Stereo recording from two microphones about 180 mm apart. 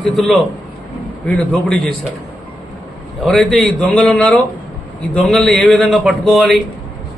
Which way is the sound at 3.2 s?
Centre (ahead or behind).